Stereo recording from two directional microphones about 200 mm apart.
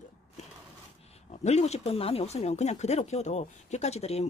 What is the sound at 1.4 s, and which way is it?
Speech, 35° left (ahead or behind).